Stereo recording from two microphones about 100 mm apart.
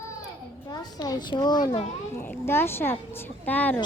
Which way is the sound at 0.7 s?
40° left (ahead or behind).